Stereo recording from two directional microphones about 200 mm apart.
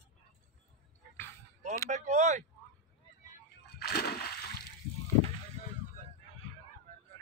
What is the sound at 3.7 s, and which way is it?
Splash, 50° left (ahead or behind).